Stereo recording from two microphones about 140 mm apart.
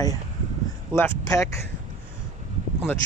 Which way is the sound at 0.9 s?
20° left (ahead or behind).